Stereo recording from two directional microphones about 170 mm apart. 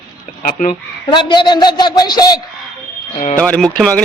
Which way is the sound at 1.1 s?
25° left (ahead or behind).